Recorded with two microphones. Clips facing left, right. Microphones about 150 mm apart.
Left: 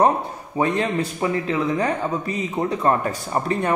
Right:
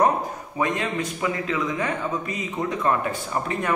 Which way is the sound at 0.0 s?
30° left (ahead or behind).